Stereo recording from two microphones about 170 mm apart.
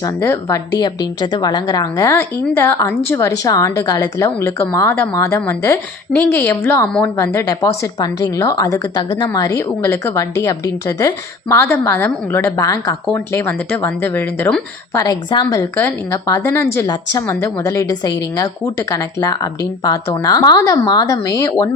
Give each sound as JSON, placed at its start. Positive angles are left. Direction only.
{"t": 0.0, "sound": "a woman's voice", "side_deg": 20}
{"t": 15.0, "sound": "a woman's voice", "side_deg": 25}